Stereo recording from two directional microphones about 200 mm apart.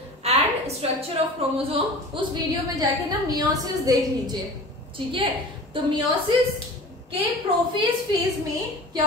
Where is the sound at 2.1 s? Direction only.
25° right (ahead or behind).